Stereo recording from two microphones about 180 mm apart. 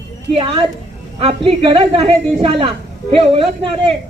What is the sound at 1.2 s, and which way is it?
A woman's voice, 30° right (ahead or behind).